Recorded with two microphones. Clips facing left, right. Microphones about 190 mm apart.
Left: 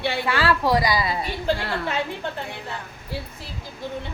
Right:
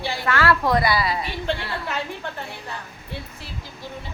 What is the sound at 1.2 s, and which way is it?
Speech, 40° left (ahead or behind).